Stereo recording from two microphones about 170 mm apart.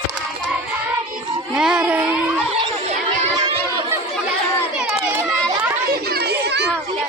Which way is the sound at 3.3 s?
25° right (ahead or behind).